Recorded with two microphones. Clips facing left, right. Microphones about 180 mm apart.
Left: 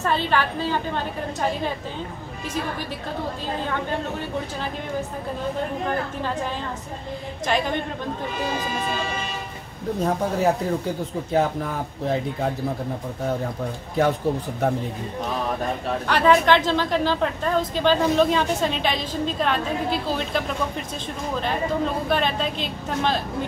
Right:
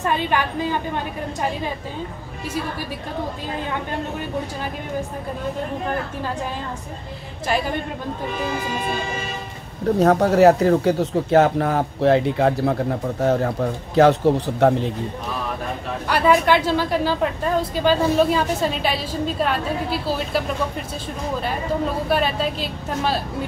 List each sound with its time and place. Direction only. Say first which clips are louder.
0.0 s speech: right 1 dB; 15° right (ahead or behind)
7.4 s speech: right 1 dB; 5° right (ahead or behind)
9.9 s speech: right 8 dB; 75° right (ahead or behind)
16.1 s speech: right 1 dB; 10° right (ahead or behind)
22.1 s speech: right 4 dB; 5° right (ahead or behind)